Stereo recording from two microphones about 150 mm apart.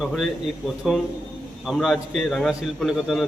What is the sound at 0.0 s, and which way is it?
A man's voice, centre (ahead or behind).